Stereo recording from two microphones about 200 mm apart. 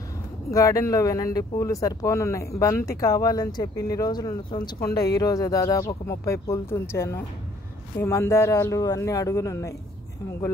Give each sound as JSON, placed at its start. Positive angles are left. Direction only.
{"t": 0.5, "sound": "speech", "side_deg": 15}